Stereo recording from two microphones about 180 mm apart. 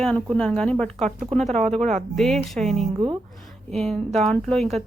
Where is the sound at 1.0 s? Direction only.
40° right (ahead or behind).